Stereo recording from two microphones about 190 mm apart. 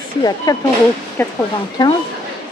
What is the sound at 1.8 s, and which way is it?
Speech, 20° left (ahead or behind).